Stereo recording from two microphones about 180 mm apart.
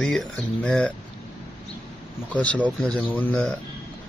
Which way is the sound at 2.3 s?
5° left (ahead or behind).